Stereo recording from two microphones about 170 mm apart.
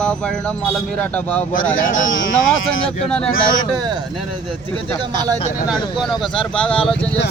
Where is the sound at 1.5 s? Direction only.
50° left (ahead or behind).